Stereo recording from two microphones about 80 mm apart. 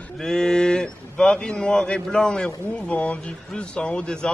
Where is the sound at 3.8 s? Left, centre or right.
Centre.